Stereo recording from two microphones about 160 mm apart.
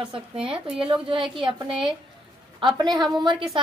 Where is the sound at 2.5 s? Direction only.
30° right (ahead or behind).